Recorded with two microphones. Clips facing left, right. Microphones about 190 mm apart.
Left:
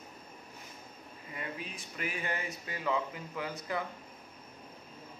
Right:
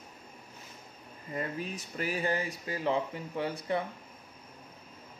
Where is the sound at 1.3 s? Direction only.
40° right (ahead or behind).